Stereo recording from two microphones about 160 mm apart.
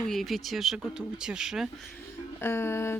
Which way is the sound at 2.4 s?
15° left (ahead or behind).